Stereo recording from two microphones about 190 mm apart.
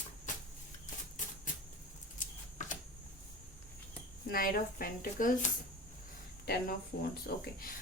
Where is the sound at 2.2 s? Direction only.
40° left (ahead or behind).